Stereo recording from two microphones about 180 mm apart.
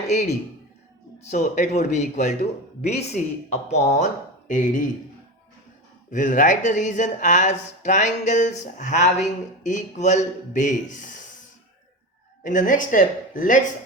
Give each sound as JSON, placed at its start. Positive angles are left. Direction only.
{"t": 0.1, "sound": "speech", "side_deg": 40}
{"t": 6.1, "sound": "speech", "side_deg": 45}
{"t": 12.4, "sound": "speech", "side_deg": 45}